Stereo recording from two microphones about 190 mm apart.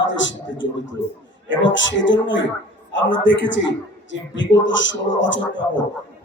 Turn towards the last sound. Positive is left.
turn(degrees=75)  # may be behind; listen again after turning